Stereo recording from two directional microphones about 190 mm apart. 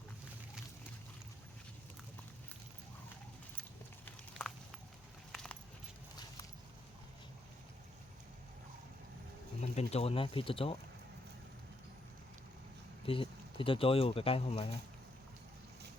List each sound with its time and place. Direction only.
3.6 s a sound: 5° left (ahead or behind)
9.6 s speech: 35° left (ahead or behind)
13.1 s speech: 30° left (ahead or behind)